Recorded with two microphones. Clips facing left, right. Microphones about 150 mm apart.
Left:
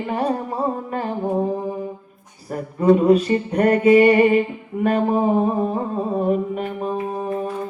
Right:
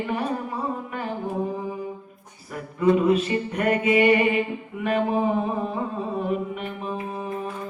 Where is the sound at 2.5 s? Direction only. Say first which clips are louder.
Left 4 dB; 40° left (ahead or behind).